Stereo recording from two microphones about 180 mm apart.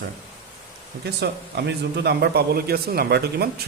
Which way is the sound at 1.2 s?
65° right (ahead or behind).